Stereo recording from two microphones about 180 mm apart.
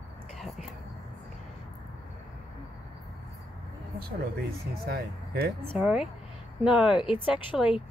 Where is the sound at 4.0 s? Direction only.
60° right (ahead or behind).